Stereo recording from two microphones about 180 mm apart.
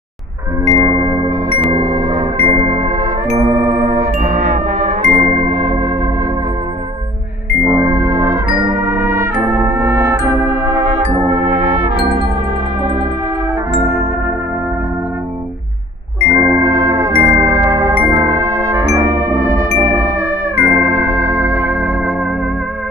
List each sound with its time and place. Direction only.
0.7 s music: 15° left (ahead or behind)
0.9 s music: 20° right (ahead or behind)
2.3 s music: 30° right (ahead or behind)
5.4 s organ: 30° right (ahead or behind)
7.6 s music: 20° right (ahead or behind)
11.8 s music: 30° right (ahead or behind)
16.3 s music: 15° right (ahead or behind)